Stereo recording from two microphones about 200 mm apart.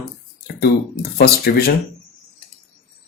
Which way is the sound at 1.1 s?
50° left (ahead or behind).